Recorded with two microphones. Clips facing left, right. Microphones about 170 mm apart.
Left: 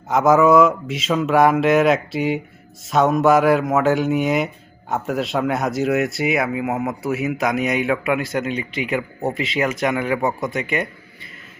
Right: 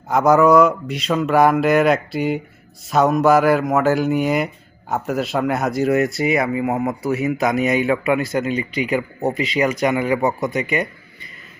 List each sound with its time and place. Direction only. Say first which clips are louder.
0.1 s speech: right 1 dB; centre (ahead or behind)